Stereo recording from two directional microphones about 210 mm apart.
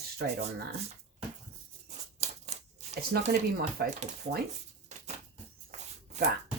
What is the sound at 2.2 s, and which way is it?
Scissors, 30° right (ahead or behind).